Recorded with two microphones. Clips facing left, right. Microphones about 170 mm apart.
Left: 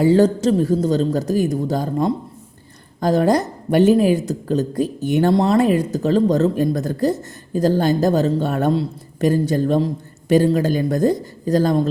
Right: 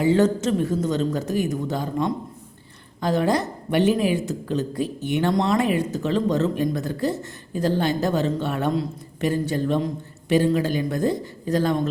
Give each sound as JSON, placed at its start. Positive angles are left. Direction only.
{"t": 0.0, "sound": "a woman's voice", "side_deg": 35}